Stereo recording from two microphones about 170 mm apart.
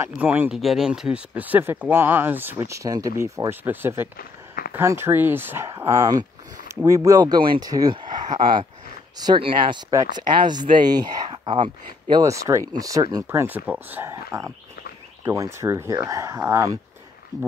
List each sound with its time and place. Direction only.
0.0 s speech: 10° right (ahead or behind)
4.2 s walk: 60° left (ahead or behind)
4.7 s speech: 15° right (ahead or behind)